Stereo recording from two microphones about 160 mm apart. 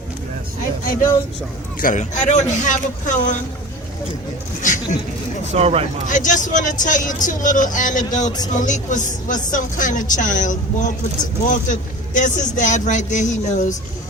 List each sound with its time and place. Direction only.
1.8 s speech: 50° left (ahead or behind)
4.6 s speech: 50° left (ahead or behind)
5.5 s speech: 40° right (ahead or behind)
6.1 s speech: 55° left (ahead or behind)